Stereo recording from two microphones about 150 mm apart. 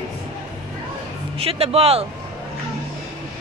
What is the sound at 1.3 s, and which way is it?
Speech, 40° right (ahead or behind).